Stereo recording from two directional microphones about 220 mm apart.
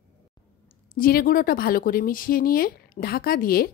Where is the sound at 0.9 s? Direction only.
40° left (ahead or behind).